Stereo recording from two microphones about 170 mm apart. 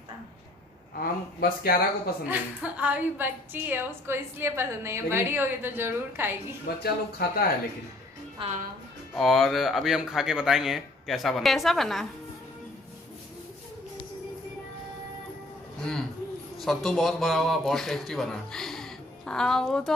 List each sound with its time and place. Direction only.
0.9 s speech: 60° left (ahead or behind)
2.2 s a woman's voice: 10° right (ahead or behind)
6.8 s speech: 65° left (ahead or behind)
8.4 s a woman's voice: 45° right (ahead or behind)
9.1 s a man's voice: centre (ahead or behind)
16.6 s a man's voice: centre (ahead or behind)